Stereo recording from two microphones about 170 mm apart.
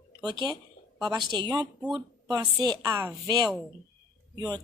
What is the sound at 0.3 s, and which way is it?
Speech, 25° right (ahead or behind).